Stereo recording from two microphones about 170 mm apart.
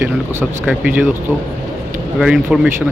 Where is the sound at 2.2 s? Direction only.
5° right (ahead or behind).